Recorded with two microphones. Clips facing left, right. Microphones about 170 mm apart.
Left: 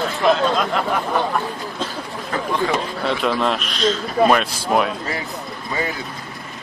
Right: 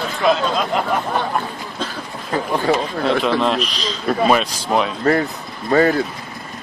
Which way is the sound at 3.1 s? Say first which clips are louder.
Right 3 dB; centre (ahead or behind).